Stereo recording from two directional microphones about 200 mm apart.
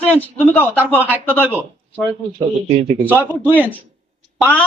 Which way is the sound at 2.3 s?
25° right (ahead or behind).